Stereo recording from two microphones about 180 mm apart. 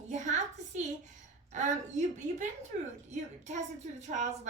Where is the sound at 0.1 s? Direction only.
40° right (ahead or behind).